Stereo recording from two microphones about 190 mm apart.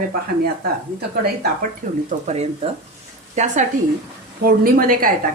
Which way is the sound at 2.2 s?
35° right (ahead or behind).